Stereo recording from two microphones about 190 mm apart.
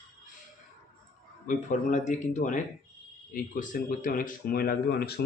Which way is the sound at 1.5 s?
40° left (ahead or behind).